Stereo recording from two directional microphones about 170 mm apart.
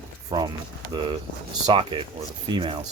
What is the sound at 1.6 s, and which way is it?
Speech, 30° right (ahead or behind).